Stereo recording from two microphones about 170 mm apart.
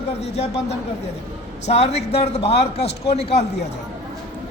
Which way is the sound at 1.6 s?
40° left (ahead or behind).